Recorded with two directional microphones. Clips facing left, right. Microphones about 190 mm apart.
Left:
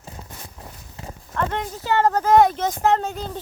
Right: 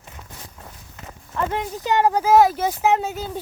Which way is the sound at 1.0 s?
30° left (ahead or behind).